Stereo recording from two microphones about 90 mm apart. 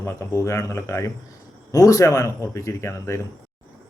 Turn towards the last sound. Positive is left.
turn(degrees=30)  # may be behind; listen again after turning